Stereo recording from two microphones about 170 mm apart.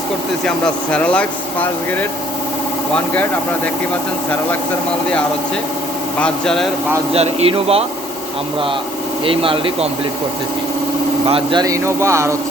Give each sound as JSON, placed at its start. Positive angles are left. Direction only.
{"t": 0.4, "sound": "speech", "side_deg": 5}
{"t": 6.1, "sound": "speech", "side_deg": 5}
{"t": 7.1, "sound": "speech", "side_deg": -35}
{"t": 9.2, "sound": "speech", "side_deg": -30}
{"t": 11.3, "sound": "speech", "side_deg": -35}
{"t": 11.6, "sound": "speech", "side_deg": -15}